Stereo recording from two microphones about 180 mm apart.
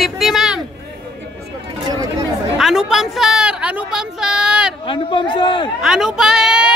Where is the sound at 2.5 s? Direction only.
Centre (ahead or behind).